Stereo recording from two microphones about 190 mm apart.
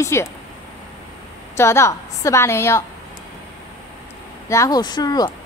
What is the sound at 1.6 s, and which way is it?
A woman's voice, 15° left (ahead or behind).